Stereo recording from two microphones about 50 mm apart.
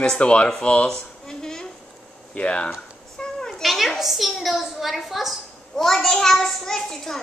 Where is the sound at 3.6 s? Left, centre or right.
Centre.